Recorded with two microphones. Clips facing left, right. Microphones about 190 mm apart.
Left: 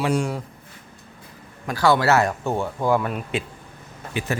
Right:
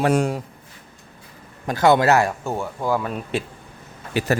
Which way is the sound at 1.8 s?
20° right (ahead or behind).